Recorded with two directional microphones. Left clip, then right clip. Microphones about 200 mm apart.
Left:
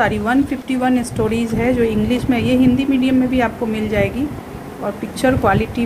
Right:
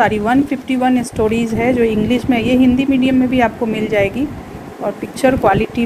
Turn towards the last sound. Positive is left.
turn(degrees=-15)  # may be behind; listen again after turning